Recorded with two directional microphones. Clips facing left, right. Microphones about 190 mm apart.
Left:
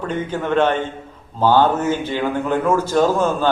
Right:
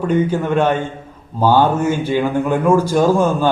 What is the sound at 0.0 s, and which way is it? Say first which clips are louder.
A man's voice: right 6 dB; 10° right (ahead or behind).